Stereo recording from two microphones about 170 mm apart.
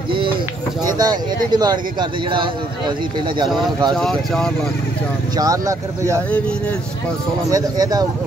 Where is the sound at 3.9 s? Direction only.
Centre (ahead or behind).